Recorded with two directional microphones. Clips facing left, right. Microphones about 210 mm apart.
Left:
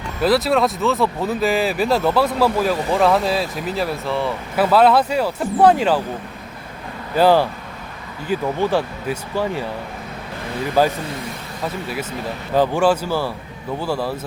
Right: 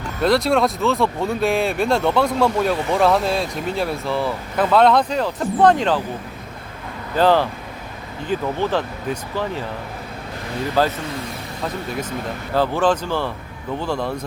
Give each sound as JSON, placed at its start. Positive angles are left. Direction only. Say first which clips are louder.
{"t": 0.2, "sound": "speech", "louder": "even", "side_deg": 0}
{"t": 7.2, "sound": "speech", "louder": "left 2 dB", "side_deg": 10}
{"t": 10.8, "sound": "speech", "louder": "left 2 dB", "side_deg": 15}
{"t": 12.5, "sound": "speech", "louder": "left 2 dB", "side_deg": 15}